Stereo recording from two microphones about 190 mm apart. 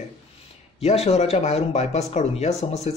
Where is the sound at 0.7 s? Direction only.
35° left (ahead or behind).